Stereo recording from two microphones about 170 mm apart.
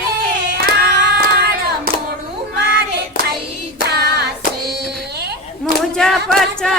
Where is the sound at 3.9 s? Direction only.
70° right (ahead or behind).